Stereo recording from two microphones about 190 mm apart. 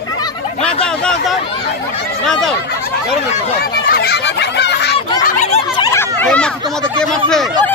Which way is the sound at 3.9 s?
55° left (ahead or behind).